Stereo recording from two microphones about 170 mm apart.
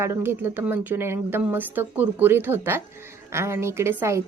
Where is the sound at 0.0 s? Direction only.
15° right (ahead or behind).